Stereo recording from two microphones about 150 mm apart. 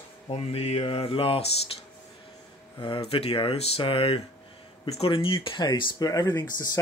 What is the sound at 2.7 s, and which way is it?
Speech, 35° left (ahead or behind).